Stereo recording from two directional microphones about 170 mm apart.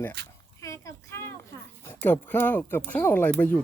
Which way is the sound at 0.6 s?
20° left (ahead or behind).